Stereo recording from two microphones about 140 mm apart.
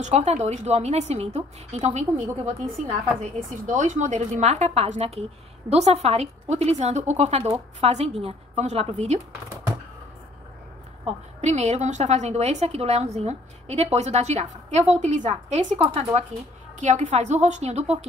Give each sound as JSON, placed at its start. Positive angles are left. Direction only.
{"t": 0.0, "sound": "a woman's voice", "side_deg": -50}
{"t": 11.4, "sound": "a woman's voice", "side_deg": -55}
{"t": 16.8, "sound": "a woman's voice", "side_deg": -55}